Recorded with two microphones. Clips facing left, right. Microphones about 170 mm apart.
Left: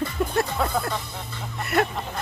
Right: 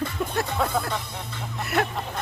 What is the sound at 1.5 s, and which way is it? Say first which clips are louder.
Speech: left 2 dB; centre (ahead or behind).